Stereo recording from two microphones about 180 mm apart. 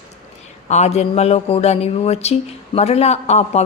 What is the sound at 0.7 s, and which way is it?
Speech, 35° left (ahead or behind).